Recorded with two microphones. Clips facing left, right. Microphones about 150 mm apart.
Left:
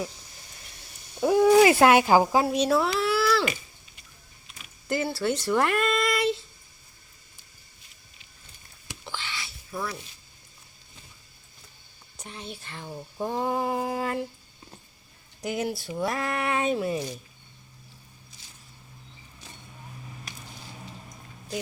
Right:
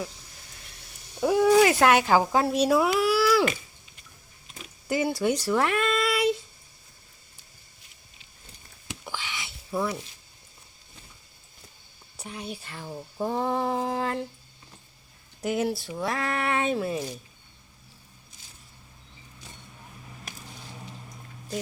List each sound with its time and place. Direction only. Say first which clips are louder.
1.2 s speech: left 2 dB; centre (ahead or behind)
2.6 s a sound: right 2 dB; 10° right (ahead or behind)
4.9 s speech: right 2 dB; 15° right (ahead or behind)
8.9 s a sound: right 1 dB; 15° right (ahead or behind)
12.2 s speech: right 3 dB; 10° right (ahead or behind)
15.4 s speech: right 3 dB; centre (ahead or behind)